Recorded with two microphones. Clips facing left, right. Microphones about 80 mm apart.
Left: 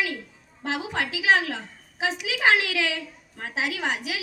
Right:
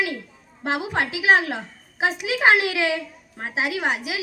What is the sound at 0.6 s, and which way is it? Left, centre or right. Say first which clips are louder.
A woman's voice: right 4 dB; right.